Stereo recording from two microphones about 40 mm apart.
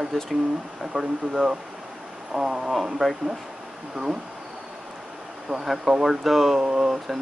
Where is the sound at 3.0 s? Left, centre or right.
Centre.